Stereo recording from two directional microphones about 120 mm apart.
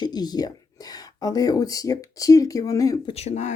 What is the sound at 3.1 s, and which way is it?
Speech, 65° left (ahead or behind).